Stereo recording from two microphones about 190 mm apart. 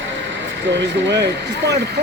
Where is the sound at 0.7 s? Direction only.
65° right (ahead or behind).